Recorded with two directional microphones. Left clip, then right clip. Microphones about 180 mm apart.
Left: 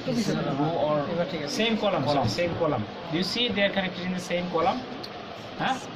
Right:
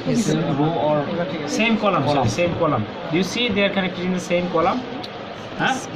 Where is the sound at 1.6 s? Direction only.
Centre (ahead or behind).